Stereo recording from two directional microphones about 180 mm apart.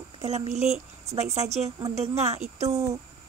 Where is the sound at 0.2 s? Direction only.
35° right (ahead or behind).